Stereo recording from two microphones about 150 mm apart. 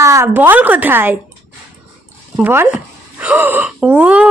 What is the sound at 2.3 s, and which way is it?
A woman's voice, 15° right (ahead or behind).